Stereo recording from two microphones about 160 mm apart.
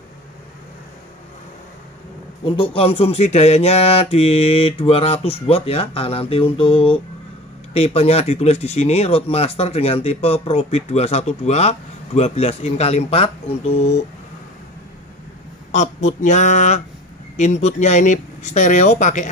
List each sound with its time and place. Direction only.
2.4 s speech: 35° left (ahead or behind)
15.7 s speech: 45° left (ahead or behind)